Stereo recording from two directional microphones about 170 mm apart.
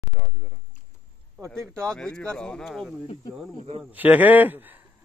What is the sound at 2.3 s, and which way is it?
Speech, 5° left (ahead or behind).